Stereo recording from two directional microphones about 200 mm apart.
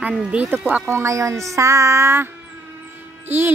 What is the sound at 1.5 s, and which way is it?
Music, 15° right (ahead or behind).